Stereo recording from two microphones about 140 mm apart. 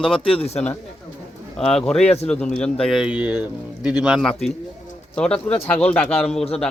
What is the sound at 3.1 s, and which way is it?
A man's voice, 10° right (ahead or behind).